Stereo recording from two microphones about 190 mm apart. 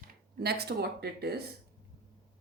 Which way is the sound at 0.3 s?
55° right (ahead or behind).